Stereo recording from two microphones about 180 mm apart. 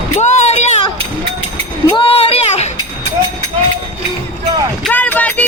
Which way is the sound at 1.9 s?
30° left (ahead or behind).